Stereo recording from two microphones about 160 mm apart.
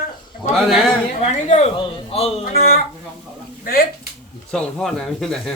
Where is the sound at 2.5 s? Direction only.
70° left (ahead or behind).